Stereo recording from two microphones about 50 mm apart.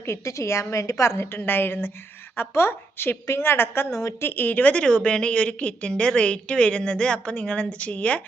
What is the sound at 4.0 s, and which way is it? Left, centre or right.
Speech, left.